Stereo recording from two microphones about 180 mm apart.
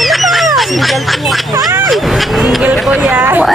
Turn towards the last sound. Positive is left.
turn(degrees=-10)  # may be behind; listen again after turning